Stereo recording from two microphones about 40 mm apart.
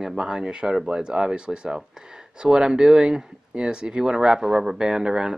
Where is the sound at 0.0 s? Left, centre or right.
Centre.